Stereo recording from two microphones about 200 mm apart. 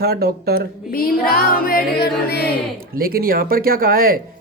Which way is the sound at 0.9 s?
50° left (ahead or behind).